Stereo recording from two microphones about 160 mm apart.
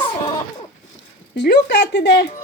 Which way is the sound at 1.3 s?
90° left.